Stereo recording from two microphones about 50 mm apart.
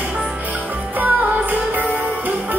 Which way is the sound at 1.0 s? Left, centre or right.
Right.